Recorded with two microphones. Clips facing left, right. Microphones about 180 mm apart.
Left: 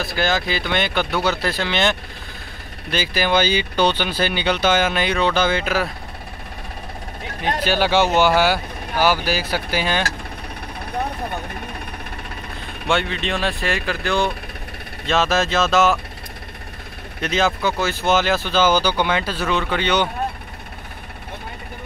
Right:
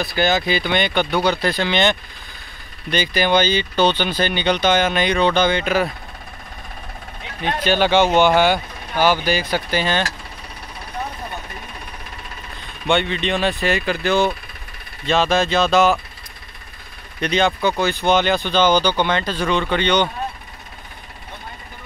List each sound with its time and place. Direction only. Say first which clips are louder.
0.0 s speech: right 2 dB; centre (ahead or behind)
7.6 s speech: right 2 dB; 5° left (ahead or behind)
12.8 s speech: right 2 dB; centre (ahead or behind)
17.2 s speech: right 2 dB; centre (ahead or behind)